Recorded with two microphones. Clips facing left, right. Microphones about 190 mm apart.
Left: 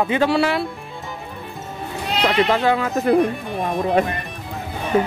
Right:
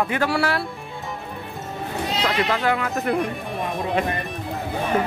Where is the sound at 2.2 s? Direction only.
25° left (ahead or behind).